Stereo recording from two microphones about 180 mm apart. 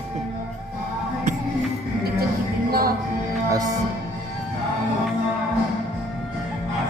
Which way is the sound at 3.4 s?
20° right (ahead or behind).